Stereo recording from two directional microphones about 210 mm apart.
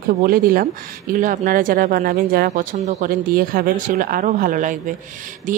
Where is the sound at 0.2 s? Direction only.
45° right (ahead or behind).